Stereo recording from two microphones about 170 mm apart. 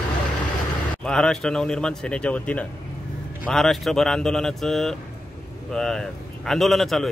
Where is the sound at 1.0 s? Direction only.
5° left (ahead or behind).